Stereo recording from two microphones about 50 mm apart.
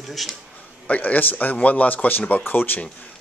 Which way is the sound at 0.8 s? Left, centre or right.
Left.